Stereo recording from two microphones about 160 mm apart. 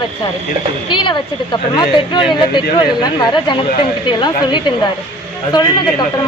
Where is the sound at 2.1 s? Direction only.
30° left (ahead or behind).